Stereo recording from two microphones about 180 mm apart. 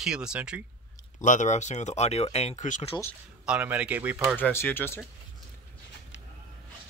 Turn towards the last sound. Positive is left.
turn(degrees=90)